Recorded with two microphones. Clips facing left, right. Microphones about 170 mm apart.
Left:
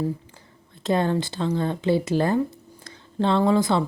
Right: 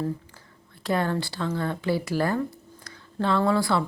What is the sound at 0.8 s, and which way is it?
A woman's voice, 20° left (ahead or behind).